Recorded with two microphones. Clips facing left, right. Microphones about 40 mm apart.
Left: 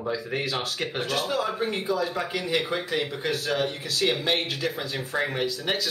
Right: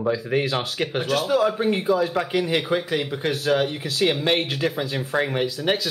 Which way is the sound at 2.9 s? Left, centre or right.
Centre.